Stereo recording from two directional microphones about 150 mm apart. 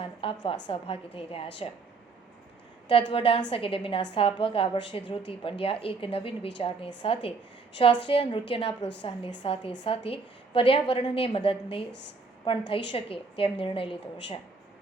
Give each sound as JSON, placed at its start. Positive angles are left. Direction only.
{"t": 0.0, "sound": "a woman's voice", "side_deg": 35}
{"t": 2.9, "sound": "a woman's voice", "side_deg": 35}